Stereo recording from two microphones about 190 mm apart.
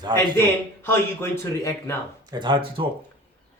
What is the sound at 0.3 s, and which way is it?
Speech, 10° left (ahead or behind).